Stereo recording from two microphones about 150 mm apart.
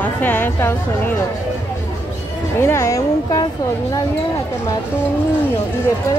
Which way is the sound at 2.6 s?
20° left (ahead or behind).